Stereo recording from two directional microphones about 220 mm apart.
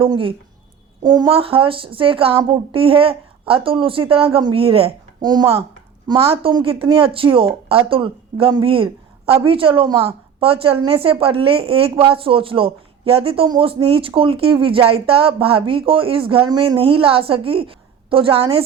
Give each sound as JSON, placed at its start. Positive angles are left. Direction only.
{"t": 0.0, "sound": "speech", "side_deg": -25}